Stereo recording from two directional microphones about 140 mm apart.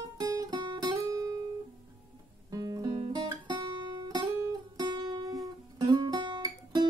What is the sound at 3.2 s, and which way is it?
Music, 30° right (ahead or behind).